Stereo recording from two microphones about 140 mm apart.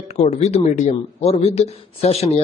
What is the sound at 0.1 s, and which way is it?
A man's voice, 50° left (ahead or behind).